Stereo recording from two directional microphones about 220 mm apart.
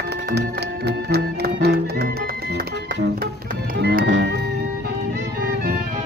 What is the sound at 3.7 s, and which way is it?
Music, 45° right (ahead or behind).